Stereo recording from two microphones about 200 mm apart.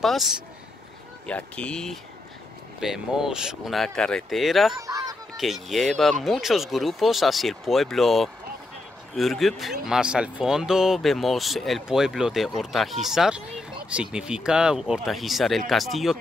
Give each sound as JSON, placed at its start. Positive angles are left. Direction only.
{"t": 1.2, "sound": "speech", "side_deg": 5}
{"t": 4.7, "sound": "fowl", "side_deg": -20}
{"t": 5.4, "sound": "speech", "side_deg": 0}